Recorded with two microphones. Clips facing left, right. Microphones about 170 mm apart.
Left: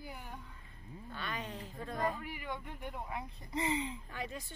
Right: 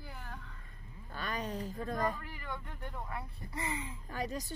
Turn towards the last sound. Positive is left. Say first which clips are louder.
# right 5 dB
turn(degrees=-40)  # may be behind; listen again after turning